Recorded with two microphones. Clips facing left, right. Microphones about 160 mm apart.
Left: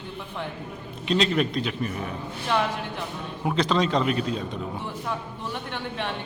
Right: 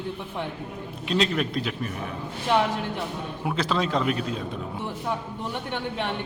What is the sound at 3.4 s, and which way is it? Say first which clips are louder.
A man's voice: left 3 dB; 5° right (ahead or behind).